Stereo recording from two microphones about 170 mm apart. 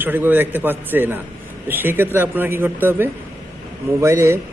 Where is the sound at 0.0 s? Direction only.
10° right (ahead or behind).